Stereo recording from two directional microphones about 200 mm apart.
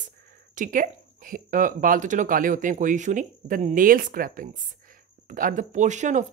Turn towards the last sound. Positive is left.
turn(degrees=-35)  # may be behind; listen again after turning